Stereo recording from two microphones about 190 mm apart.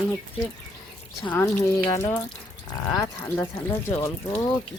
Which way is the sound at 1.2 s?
5° left (ahead or behind).